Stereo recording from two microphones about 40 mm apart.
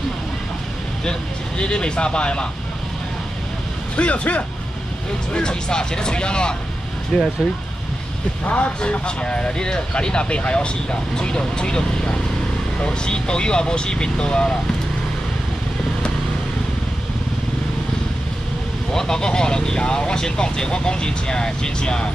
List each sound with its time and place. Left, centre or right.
1.6 s speech: left
3.9 s speech: left
5.3 s speech: left
7.1 s speech: centre
8.5 s speech: left
18.9 s speech: centre